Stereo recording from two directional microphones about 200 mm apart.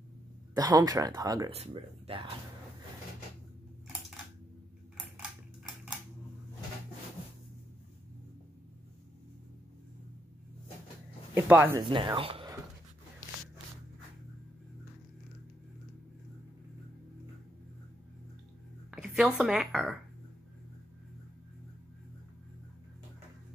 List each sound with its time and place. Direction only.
0.6 s speech: 20° right (ahead or behind)
1.5 s speech: 30° right (ahead or behind)
4.9 s a sound: 5° right (ahead or behind)
11.3 s speech: 10° right (ahead or behind)
11.9 s speech: 25° right (ahead or behind)
18.9 s a woman's voice: 5° right (ahead or behind)